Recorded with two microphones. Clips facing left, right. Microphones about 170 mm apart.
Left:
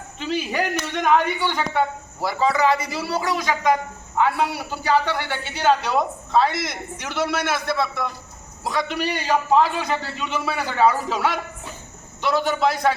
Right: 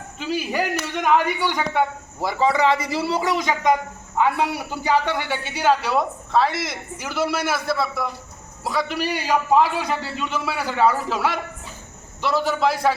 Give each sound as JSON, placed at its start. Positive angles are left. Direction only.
{"t": 0.2, "sound": "a man's voice", "side_deg": -5}